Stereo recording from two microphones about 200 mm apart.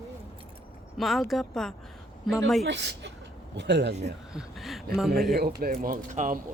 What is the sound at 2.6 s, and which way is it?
Speech, 60° right (ahead or behind).